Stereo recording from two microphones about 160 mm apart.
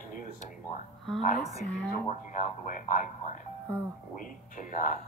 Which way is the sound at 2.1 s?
50° left (ahead or behind).